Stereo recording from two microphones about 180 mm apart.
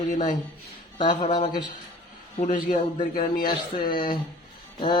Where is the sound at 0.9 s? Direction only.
25° left (ahead or behind).